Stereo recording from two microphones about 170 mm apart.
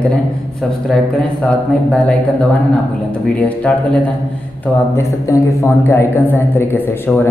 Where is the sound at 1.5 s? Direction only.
5° left (ahead or behind).